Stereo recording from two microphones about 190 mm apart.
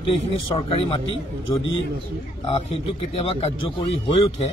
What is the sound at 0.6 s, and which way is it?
Speech, 30° left (ahead or behind).